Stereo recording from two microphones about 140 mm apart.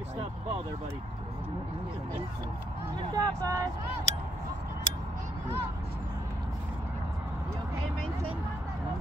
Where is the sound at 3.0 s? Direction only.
25° right (ahead or behind).